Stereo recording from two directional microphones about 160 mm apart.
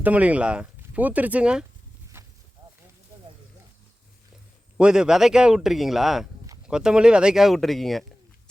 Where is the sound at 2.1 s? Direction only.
15° right (ahead or behind).